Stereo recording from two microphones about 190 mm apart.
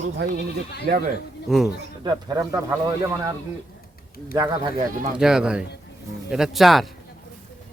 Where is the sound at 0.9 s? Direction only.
45° right (ahead or behind).